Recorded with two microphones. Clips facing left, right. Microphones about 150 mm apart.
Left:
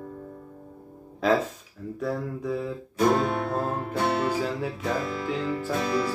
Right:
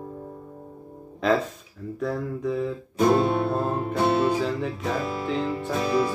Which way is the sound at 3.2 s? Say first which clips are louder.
Right 4 dB; 25° right (ahead or behind).